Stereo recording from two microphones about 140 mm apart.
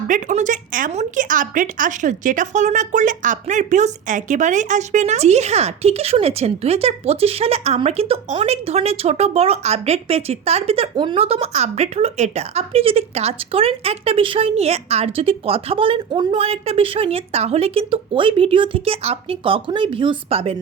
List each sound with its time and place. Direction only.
0.1 s speech: 60° right (ahead or behind); by 10.8 s 45° right (ahead or behind)
10.9 s speech: 35° right (ahead or behind)